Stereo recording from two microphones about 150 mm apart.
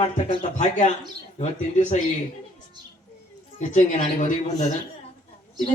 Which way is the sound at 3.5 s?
50° left (ahead or behind).